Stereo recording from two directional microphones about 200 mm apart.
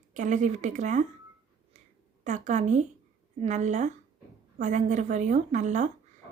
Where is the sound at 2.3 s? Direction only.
35° right (ahead or behind).